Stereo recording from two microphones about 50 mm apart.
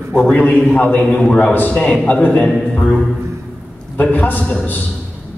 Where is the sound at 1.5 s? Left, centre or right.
Left.